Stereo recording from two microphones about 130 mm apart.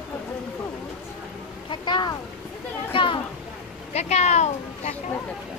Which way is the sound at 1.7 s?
35° left (ahead or behind).